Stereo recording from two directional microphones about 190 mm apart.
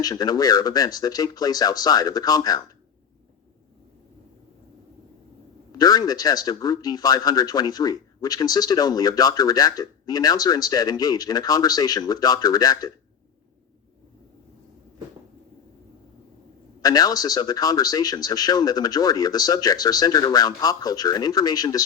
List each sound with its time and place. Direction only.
0.0 s speech: 20° left (ahead or behind)
5.7 s speech: 20° left (ahead or behind)
16.8 s speech: 20° left (ahead or behind)